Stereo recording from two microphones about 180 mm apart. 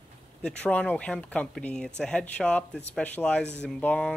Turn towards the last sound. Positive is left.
turn(degrees=5)  # may be behind; listen again after turning